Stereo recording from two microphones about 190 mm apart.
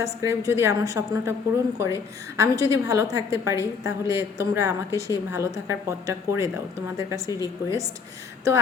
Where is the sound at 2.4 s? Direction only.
15° right (ahead or behind).